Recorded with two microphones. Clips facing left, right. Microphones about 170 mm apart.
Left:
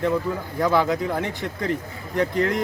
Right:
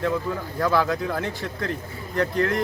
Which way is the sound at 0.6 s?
15° left (ahead or behind).